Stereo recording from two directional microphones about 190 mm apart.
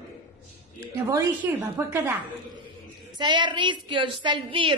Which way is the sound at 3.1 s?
25° right (ahead or behind).